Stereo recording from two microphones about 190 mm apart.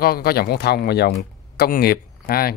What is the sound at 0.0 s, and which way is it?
Speech, 50° left (ahead or behind).